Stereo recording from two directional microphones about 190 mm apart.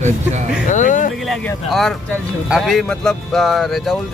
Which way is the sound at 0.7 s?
40° left (ahead or behind).